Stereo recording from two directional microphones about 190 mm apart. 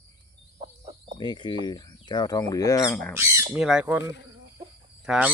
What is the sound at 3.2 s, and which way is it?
Squawk, 15° right (ahead or behind).